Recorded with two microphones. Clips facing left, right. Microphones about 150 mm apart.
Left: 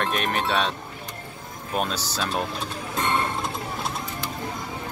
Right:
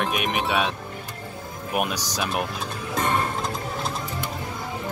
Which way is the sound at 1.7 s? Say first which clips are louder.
Right 1 dB; 15° right (ahead or behind).